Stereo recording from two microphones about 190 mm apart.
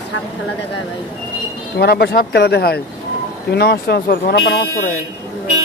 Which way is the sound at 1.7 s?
60° left (ahead or behind).